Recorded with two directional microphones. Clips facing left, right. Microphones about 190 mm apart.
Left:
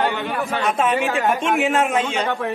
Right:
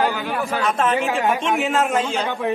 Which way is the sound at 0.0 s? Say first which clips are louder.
Even; 5° right (ahead or behind).